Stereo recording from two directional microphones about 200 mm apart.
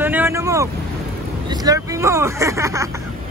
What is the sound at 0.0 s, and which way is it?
Vehicle, 10° right (ahead or behind).